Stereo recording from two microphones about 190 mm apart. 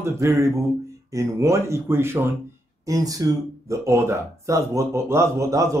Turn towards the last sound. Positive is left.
turn(degrees=-15)  # may be behind; listen again after turning